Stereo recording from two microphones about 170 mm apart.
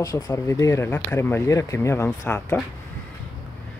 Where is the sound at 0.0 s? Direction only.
20° left (ahead or behind).